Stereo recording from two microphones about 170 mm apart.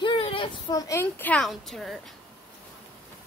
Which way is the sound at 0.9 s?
15° left (ahead or behind).